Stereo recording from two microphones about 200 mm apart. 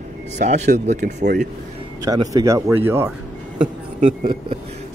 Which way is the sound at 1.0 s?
55° right (ahead or behind).